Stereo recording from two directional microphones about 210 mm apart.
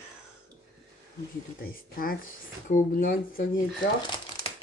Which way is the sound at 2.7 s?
40° left (ahead or behind).